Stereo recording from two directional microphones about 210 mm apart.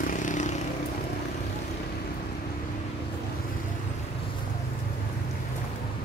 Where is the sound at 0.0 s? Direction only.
40° left (ahead or behind).